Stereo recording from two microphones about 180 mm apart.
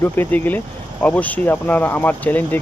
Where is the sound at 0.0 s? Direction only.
10° left (ahead or behind).